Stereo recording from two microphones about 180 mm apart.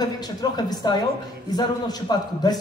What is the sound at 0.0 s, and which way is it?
A woman's voice, 20° left (ahead or behind).